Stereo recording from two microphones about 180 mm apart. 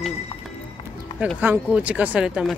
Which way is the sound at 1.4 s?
10° right (ahead or behind).